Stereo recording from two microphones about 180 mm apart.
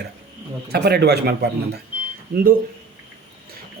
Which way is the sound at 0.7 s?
65° right (ahead or behind).